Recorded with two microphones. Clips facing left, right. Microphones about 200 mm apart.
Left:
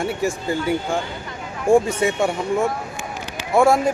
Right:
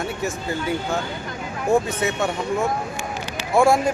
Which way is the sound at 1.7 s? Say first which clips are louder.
Left 4 dB; 30° left (ahead or behind).